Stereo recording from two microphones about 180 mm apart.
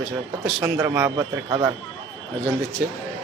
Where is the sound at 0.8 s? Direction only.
15° right (ahead or behind).